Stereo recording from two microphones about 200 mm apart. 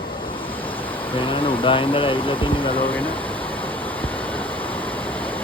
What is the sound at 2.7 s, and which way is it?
Speech, 10° left (ahead or behind).